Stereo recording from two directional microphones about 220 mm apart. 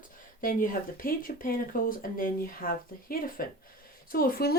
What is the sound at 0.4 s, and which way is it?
Speech, 40° left (ahead or behind).